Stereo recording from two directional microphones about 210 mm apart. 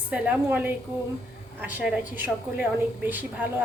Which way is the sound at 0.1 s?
5° right (ahead or behind).